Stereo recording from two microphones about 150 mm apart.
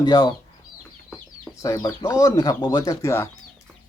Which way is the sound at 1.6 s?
25° left (ahead or behind).